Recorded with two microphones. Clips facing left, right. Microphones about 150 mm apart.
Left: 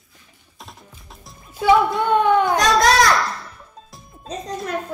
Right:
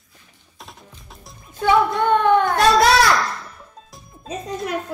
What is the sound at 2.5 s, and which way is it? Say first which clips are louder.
Baby cry: right 1 dB; 5° right (ahead or behind).